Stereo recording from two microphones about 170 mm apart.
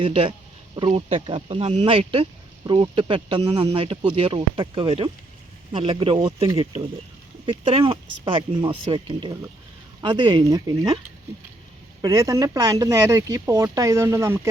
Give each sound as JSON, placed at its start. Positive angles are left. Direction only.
{"t": 0.0, "sound": "speech", "side_deg": -30}
{"t": 12.0, "sound": "speech", "side_deg": -20}